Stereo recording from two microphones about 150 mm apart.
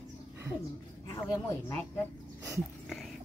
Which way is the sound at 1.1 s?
20° left (ahead or behind).